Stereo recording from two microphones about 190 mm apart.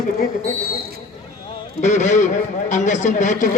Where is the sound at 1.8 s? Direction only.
40° left (ahead or behind).